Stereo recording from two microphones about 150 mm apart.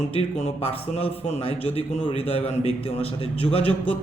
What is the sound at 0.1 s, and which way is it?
A man's voice, 45° left (ahead or behind).